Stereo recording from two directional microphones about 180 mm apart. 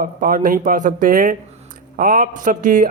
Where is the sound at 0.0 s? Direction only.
50° right (ahead or behind).